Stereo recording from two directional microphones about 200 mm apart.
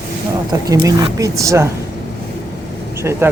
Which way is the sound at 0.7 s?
20° right (ahead or behind).